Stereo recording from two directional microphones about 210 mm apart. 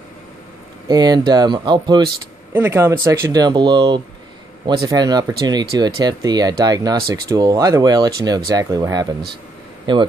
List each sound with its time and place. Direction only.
0.8 s speech: 20° right (ahead or behind)